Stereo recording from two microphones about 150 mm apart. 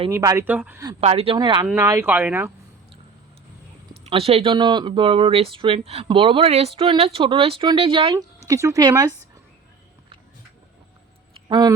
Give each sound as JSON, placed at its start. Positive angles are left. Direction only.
{"t": 0.1, "sound": "speech", "side_deg": -20}
{"t": 1.0, "sound": "speech", "side_deg": -40}
{"t": 1.6, "sound": "speech", "side_deg": -15}
{"t": 4.0, "sound": "speech", "side_deg": -40}
{"t": 8.4, "sound": "speech", "side_deg": -20}
{"t": 11.3, "sound": "a sound", "side_deg": -30}